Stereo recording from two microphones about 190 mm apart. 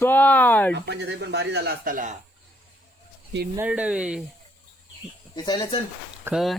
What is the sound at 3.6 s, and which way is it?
Speech, 5° right (ahead or behind).